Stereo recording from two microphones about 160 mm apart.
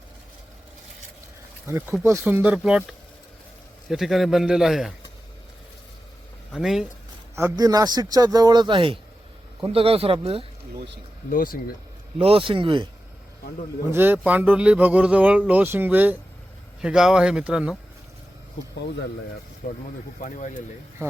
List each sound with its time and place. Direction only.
1.6 s a man's voice: 15° right (ahead or behind)
6.5 s a man's voice: centre (ahead or behind)
7.3 s a man's voice: 20° right (ahead or behind); by 10.4 s 35° right (ahead or behind)
11.3 s speech: 60° left (ahead or behind)
12.2 s a man's voice: 35° right (ahead or behind)
13.9 s a man's voice: 10° right (ahead or behind)
19.6 s speech: 70° left (ahead or behind)
20.2 s speech: 50° left (ahead or behind)